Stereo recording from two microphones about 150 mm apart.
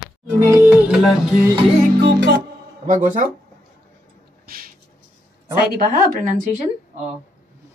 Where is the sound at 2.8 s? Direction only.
60° right (ahead or behind).